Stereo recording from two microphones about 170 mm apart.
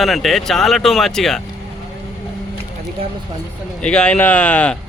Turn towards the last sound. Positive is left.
turn(degrees=10)  # may be behind; listen again after turning